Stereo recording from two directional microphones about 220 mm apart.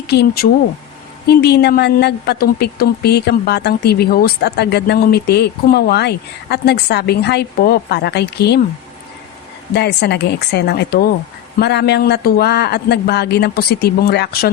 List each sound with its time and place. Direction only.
0.1 s a woman's voice: 50° left (ahead or behind)
9.7 s a woman's voice: 50° left (ahead or behind)